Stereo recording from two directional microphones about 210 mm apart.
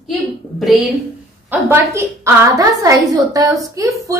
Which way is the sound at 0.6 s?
Centre (ahead or behind).